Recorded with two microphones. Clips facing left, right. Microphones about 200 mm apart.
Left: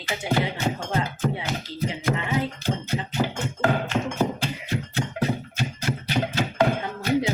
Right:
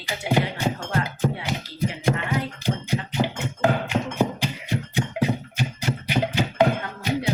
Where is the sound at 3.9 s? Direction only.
15° right (ahead or behind).